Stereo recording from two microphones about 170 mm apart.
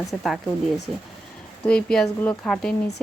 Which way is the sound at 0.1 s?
Centre (ahead or behind).